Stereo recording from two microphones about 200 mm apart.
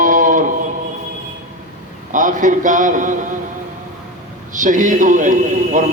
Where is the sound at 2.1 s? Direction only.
40° right (ahead or behind).